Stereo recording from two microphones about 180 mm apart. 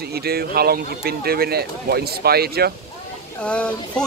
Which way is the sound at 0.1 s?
60° right (ahead or behind).